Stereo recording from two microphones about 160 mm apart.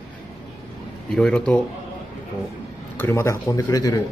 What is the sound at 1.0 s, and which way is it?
Speech, 5° left (ahead or behind).